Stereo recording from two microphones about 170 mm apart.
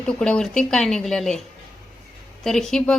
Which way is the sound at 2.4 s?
Centre (ahead or behind).